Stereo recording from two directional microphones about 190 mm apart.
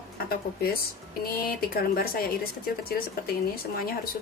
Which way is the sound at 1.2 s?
50° left (ahead or behind).